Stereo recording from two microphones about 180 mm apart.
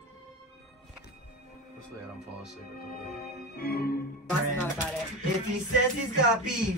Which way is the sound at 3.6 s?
55° left (ahead or behind).